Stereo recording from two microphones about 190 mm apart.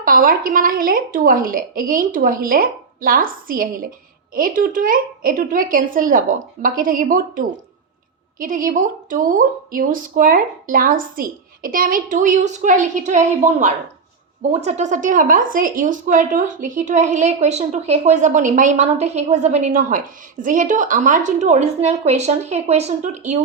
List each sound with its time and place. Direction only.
0.0 s a woman's voice: 50° right (ahead or behind)